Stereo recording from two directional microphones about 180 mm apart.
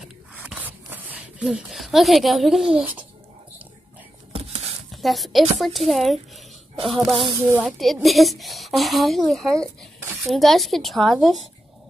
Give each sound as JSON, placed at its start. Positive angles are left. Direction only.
{"t": 0.0, "sound": "a sound", "side_deg": -5}
{"t": 5.0, "sound": "speech", "side_deg": 0}
{"t": 7.2, "sound": "speech", "side_deg": -15}
{"t": 7.6, "sound": "speech", "side_deg": 0}